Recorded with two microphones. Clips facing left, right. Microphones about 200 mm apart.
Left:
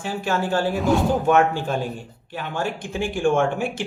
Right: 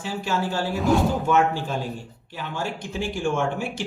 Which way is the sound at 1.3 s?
55° left (ahead or behind).